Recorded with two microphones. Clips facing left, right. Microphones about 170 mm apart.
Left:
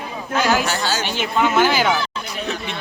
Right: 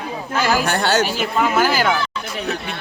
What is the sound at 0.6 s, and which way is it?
Speech, 60° right (ahead or behind).